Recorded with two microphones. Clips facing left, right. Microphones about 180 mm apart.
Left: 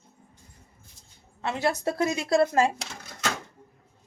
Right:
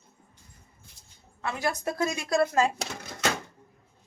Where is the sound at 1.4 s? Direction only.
25° left (ahead or behind).